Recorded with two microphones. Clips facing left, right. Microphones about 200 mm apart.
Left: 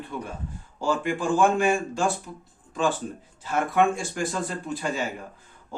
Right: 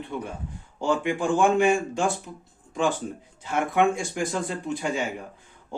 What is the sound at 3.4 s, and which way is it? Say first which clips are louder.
A man's voice: even; 20° right (ahead or behind).